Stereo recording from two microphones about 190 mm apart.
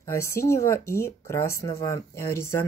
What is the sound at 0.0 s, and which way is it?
Speech, 15° left (ahead or behind).